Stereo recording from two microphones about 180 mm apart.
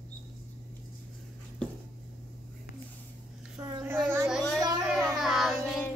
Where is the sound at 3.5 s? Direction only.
15° right (ahead or behind).